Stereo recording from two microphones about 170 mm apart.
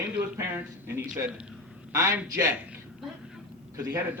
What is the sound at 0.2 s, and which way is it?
A man's voice, 10° right (ahead or behind).